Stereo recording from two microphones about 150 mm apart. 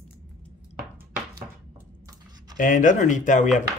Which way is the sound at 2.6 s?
60° left (ahead or behind).